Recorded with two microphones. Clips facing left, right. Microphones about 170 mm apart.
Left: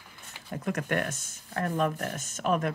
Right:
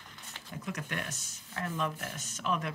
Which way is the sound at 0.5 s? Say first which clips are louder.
Left 9 dB; 55° left (ahead or behind).